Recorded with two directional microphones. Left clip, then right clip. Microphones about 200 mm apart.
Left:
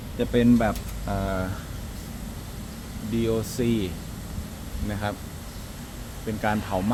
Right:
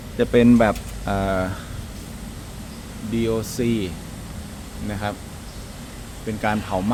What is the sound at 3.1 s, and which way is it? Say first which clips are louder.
Speech: right 3 dB; 5° right (ahead or behind).